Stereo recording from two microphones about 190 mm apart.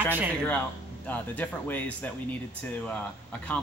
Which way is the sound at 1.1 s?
10° left (ahead or behind).